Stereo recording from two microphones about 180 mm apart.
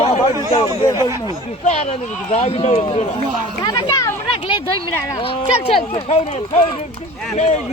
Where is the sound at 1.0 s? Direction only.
15° right (ahead or behind).